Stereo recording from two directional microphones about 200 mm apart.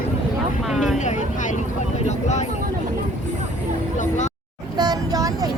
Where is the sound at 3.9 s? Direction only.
35° left (ahead or behind).